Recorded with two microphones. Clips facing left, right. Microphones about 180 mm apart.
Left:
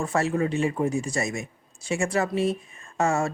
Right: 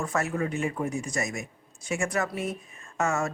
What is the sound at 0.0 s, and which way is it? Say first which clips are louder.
Speech: left 4 dB; 30° left (ahead or behind).